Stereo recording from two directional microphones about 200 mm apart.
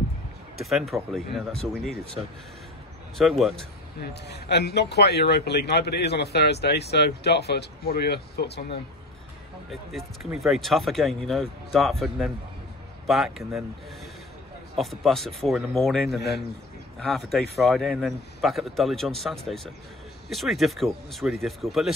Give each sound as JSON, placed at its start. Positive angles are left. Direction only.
{"t": 0.6, "sound": "speech", "side_deg": 0}
{"t": 3.2, "sound": "speech", "side_deg": 0}
{"t": 4.3, "sound": "a man's voice", "side_deg": 55}
{"t": 9.7, "sound": "speech", "side_deg": 0}
{"t": 14.8, "sound": "speech", "side_deg": 0}